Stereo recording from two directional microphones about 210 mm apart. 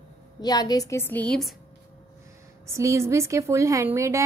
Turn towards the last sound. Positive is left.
turn(degrees=-15)  # may be behind; listen again after turning